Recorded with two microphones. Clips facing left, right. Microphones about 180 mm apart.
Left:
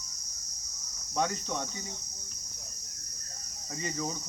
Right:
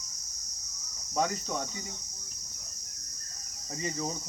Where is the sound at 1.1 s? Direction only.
5° right (ahead or behind).